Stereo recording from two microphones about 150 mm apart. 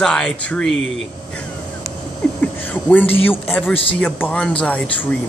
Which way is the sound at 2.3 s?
10° left (ahead or behind).